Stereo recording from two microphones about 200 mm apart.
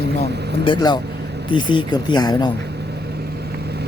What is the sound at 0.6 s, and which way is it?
Speech, 20° left (ahead or behind).